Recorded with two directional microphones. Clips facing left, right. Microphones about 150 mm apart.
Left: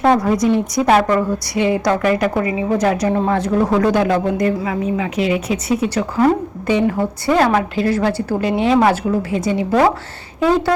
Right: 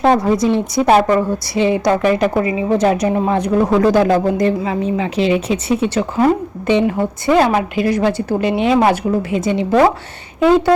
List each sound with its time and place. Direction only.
0.0 s a woman's voice: 25° right (ahead or behind)
3.8 s a woman's voice: 35° right (ahead or behind)